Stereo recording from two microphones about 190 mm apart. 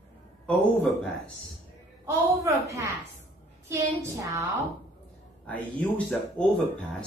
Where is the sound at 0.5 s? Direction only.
5° left (ahead or behind).